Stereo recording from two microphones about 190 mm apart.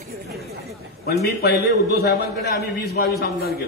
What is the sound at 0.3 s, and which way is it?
Chatter, centre (ahead or behind).